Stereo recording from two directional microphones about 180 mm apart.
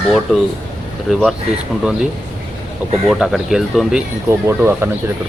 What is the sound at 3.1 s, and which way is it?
Speech, centre (ahead or behind).